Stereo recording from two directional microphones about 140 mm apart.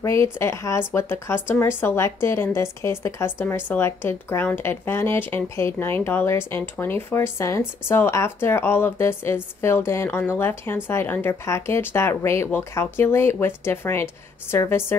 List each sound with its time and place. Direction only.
0.0 s speech: 20° left (ahead or behind)